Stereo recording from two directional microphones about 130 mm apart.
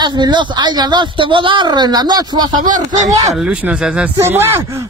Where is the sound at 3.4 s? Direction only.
10° right (ahead or behind).